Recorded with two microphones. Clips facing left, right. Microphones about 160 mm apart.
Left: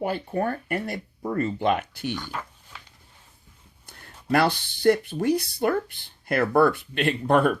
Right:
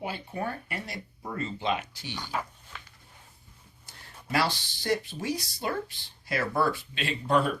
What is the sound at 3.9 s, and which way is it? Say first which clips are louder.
Speech: left 7 dB; 55° left (ahead or behind).